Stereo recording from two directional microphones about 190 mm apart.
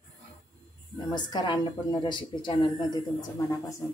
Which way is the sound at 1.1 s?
25° left (ahead or behind).